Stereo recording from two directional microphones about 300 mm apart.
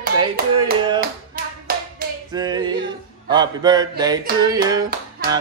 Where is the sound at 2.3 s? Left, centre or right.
Centre.